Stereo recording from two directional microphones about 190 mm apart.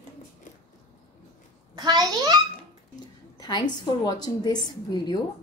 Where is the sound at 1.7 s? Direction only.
20° right (ahead or behind).